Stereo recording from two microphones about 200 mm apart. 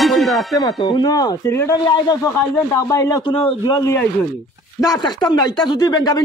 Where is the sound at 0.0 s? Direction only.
Centre (ahead or behind).